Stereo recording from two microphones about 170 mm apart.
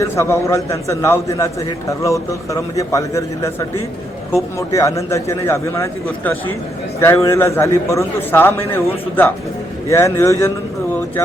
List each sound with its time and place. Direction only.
0.0 s a man's voice: 15° left (ahead or behind)